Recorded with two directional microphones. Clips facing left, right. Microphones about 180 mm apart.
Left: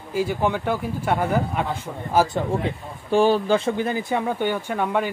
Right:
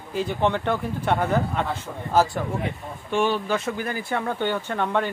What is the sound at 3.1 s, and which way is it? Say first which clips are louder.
Speech: left 5 dB; 35° left (ahead or behind).